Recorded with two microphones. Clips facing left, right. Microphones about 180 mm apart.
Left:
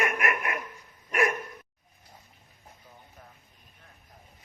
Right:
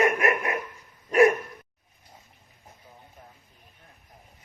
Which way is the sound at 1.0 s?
30° right (ahead or behind).